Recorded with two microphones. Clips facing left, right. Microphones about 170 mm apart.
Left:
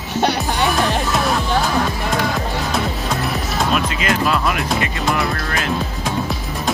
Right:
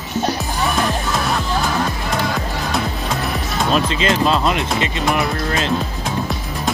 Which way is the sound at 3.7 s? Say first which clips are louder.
Right 4 dB; 25° right (ahead or behind).